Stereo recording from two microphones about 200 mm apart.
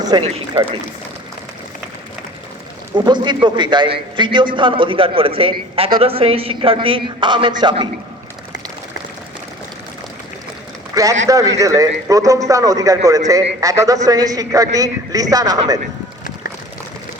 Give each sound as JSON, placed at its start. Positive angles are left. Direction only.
{"t": 0.0, "sound": "speech", "side_deg": -20}
{"t": 0.3, "sound": "speech", "side_deg": -30}
{"t": 2.9, "sound": "a woman's voice", "side_deg": -20}
{"t": 10.9, "sound": "a sound", "side_deg": -20}
{"t": 11.3, "sound": "a man's voice", "side_deg": -15}